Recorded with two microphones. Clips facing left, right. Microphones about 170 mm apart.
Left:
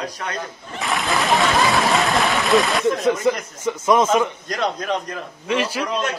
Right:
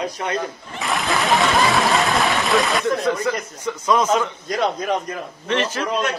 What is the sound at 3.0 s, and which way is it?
Speech, 20° left (ahead or behind).